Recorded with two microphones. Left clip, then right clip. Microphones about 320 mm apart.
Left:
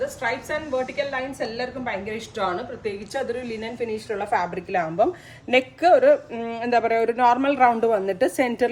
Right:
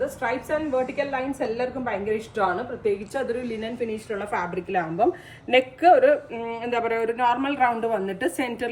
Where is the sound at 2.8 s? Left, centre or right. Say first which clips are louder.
Right 3 dB; centre.